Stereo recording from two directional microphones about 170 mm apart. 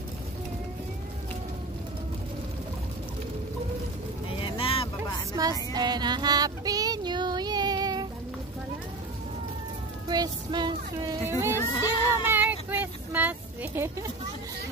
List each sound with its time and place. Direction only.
4.4 s vehicle: 30° left (ahead or behind)
5.3 s child singing: 20° right (ahead or behind)
10.0 s child singing: 25° right (ahead or behind)
11.2 s a sound: 15° right (ahead or behind)
11.5 s a sound: 15° left (ahead or behind)
12.3 s child singing: 10° right (ahead or behind)